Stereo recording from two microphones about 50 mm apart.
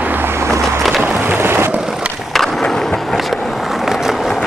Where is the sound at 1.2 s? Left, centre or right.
Right.